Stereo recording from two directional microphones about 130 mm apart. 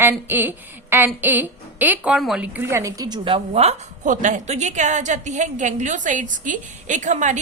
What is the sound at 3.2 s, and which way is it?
A woman's voice, 50° right (ahead or behind).